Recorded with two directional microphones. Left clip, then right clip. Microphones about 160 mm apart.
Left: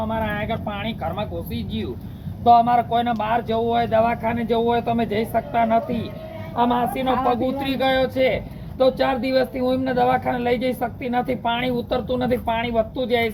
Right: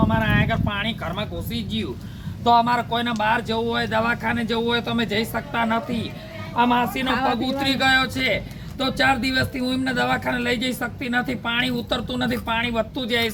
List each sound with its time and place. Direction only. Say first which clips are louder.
0.2 s speech: right 3 dB; 25° right (ahead or behind)